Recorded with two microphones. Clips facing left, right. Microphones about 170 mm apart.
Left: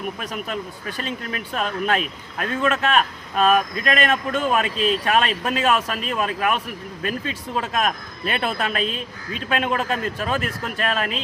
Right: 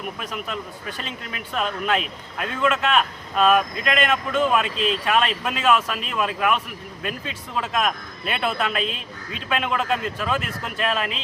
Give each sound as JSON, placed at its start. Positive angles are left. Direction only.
{"t": 0.2, "sound": "a man's voice", "side_deg": 45}